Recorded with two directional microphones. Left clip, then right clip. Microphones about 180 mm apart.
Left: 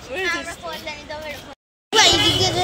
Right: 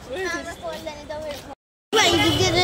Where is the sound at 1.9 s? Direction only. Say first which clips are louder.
Left 3 dB; 25° right (ahead or behind).